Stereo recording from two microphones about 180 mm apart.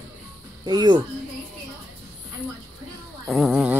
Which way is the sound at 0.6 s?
25° right (ahead or behind).